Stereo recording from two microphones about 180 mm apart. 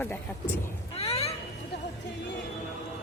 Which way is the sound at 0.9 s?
35° left (ahead or behind).